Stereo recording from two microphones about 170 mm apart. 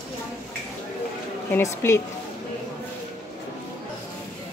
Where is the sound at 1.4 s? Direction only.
15° left (ahead or behind).